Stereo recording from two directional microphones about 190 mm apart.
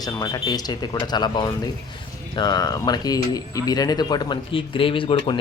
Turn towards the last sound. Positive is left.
turn(degrees=25)  # may be behind; listen again after turning